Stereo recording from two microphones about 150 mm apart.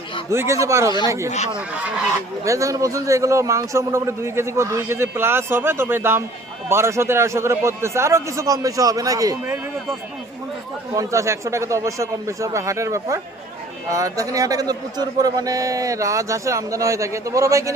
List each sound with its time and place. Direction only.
0.3 s a man's voice: 20° right (ahead or behind)
2.4 s a man's voice: 20° right (ahead or behind)
10.9 s a man's voice: 20° right (ahead or behind)